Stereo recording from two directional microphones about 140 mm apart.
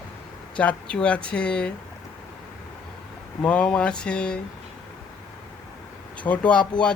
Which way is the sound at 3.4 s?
5° left (ahead or behind).